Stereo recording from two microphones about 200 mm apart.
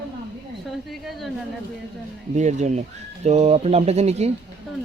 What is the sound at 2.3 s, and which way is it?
Speech, 35° right (ahead or behind).